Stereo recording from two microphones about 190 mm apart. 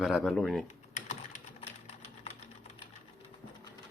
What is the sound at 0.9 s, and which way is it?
Typing, 40° left (ahead or behind).